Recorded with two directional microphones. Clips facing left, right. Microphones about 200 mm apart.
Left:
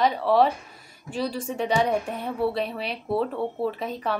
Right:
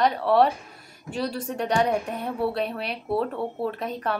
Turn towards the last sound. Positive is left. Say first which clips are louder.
# even
turn(degrees=0)  # may be behind; listen again after turning